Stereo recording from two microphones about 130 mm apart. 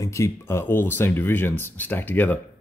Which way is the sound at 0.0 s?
20° left (ahead or behind).